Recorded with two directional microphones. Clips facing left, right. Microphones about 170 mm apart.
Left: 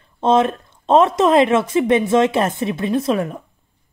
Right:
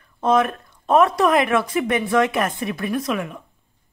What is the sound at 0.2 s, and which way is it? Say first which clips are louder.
A woman's voice: left 3 dB; 25° left (ahead or behind).